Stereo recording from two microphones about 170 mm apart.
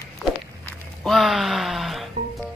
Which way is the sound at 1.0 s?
Centre (ahead or behind).